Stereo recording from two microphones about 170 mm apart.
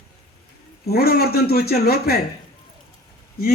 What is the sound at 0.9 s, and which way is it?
A man's voice, 65° left (ahead or behind).